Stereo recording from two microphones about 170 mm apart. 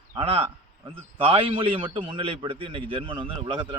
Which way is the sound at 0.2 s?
35° right (ahead or behind).